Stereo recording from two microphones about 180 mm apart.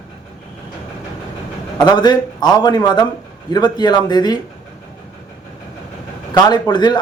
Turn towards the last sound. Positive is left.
turn(degrees=25)  # may be behind; listen again after turning